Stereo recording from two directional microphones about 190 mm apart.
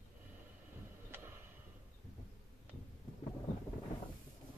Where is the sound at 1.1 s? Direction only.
10° right (ahead or behind).